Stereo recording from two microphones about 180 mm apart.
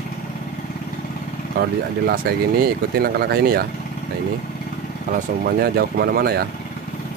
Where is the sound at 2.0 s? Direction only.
60° right (ahead or behind).